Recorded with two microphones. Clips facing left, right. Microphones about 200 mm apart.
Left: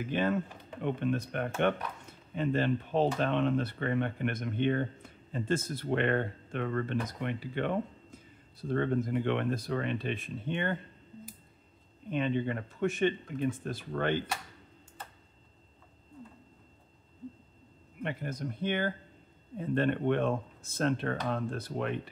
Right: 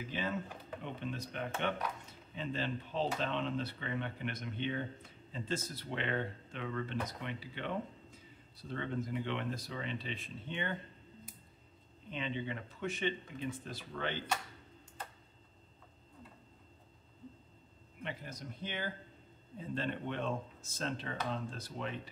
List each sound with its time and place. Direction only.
0.0 s speech: 55° left (ahead or behind)
12.1 s speech: 55° left (ahead or behind)
18.0 s speech: 55° left (ahead or behind)